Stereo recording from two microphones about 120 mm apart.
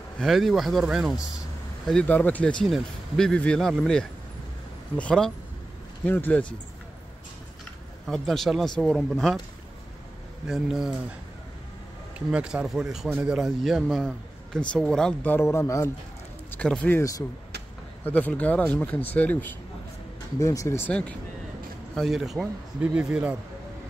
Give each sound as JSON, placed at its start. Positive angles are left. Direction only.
{"t": 0.2, "sound": "speech", "side_deg": 0}
{"t": 1.9, "sound": "speech", "side_deg": 10}
{"t": 2.6, "sound": "speech", "side_deg": 5}
{"t": 8.1, "sound": "speech", "side_deg": 5}
{"t": 10.4, "sound": "speech", "side_deg": -5}
{"t": 12.3, "sound": "speech", "side_deg": -10}
{"t": 15.3, "sound": "a man's voice", "side_deg": 25}
{"t": 16.4, "sound": "speech", "side_deg": 10}
{"t": 18.0, "sound": "speech", "side_deg": 15}
{"t": 20.3, "sound": "a man's voice", "side_deg": 25}
{"t": 20.9, "sound": "speech", "side_deg": 10}